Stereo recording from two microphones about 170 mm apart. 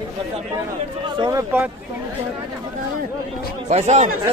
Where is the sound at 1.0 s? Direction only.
25° right (ahead or behind).